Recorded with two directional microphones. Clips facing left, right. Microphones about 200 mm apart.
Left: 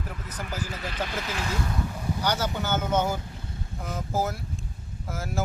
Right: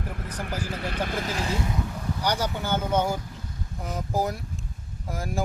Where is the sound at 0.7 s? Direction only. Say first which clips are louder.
Right 3 dB; 55° right (ahead or behind); by 1.5 s 35° right (ahead or behind).